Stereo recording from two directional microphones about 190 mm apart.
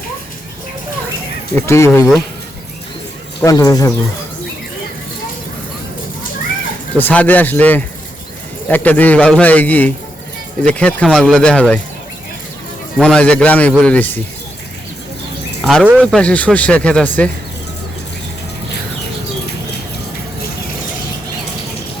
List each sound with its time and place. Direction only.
1.5 s a man's voice: 15° left (ahead or behind)
3.4 s speech: 20° left (ahead or behind)
7.0 s a man's voice: 10° left (ahead or behind)
13.0 s a man's voice: 5° left (ahead or behind)
15.6 s speech: 5° right (ahead or behind)
16.1 s a man's voice: 5° left (ahead or behind)